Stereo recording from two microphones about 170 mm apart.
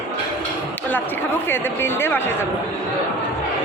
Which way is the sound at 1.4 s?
15° left (ahead or behind).